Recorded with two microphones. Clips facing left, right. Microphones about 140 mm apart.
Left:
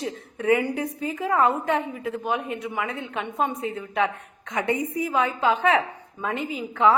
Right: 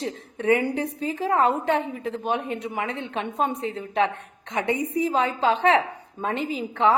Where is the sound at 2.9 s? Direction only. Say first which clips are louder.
Right 1 dB; 30° right (ahead or behind).